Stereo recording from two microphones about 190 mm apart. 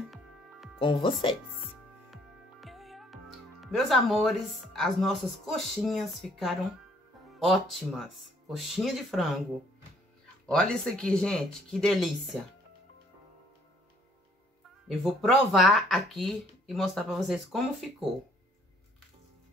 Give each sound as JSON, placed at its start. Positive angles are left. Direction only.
{"t": 0.7, "sound": "speech", "side_deg": 25}
{"t": 2.6, "sound": "speech", "side_deg": 0}
{"t": 14.9, "sound": "speech", "side_deg": 0}